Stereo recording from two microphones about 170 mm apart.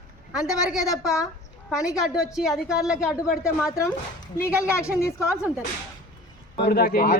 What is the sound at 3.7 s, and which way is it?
Speech, 15° left (ahead or behind).